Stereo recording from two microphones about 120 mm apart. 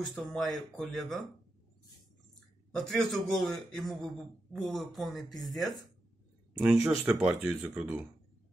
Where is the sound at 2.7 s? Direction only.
5° left (ahead or behind).